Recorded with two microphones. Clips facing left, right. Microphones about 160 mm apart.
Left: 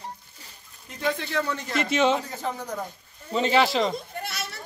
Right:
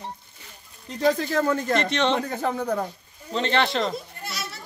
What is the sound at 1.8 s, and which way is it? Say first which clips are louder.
Speech: left 1 dB; 5° left (ahead or behind).